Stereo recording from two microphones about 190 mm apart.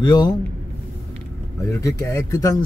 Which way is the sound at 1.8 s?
15° left (ahead or behind).